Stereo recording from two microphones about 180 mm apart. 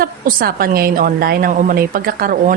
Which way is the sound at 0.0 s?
55° right (ahead or behind).